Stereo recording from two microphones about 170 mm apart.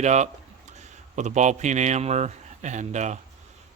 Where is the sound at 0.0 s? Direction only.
45° right (ahead or behind).